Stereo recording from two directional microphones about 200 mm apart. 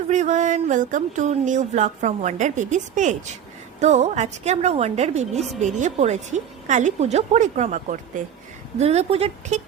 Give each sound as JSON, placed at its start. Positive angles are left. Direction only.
{"t": 0.1, "sound": "speech", "side_deg": -35}